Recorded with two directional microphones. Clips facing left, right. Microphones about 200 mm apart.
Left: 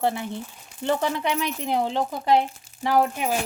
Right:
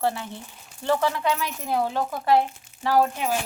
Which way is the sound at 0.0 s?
15° left (ahead or behind).